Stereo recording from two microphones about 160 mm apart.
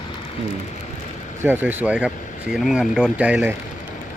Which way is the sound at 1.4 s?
10° right (ahead or behind).